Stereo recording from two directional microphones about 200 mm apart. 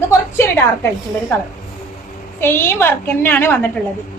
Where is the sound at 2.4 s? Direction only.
10° left (ahead or behind).